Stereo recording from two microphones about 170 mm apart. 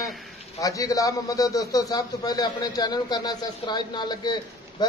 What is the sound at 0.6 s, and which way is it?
A man's voice, 20° left (ahead or behind).